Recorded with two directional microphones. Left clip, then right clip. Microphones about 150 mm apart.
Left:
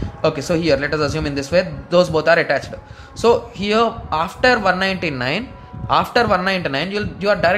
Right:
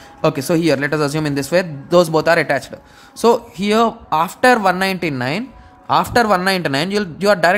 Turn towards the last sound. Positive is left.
turn(degrees=-50)  # may be behind; listen again after turning